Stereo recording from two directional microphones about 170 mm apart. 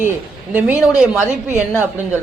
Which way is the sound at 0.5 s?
5° right (ahead or behind).